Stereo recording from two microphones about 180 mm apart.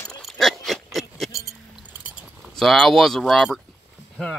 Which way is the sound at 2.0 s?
Centre (ahead or behind).